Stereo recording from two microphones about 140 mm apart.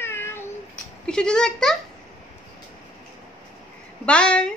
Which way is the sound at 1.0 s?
5° left (ahead or behind).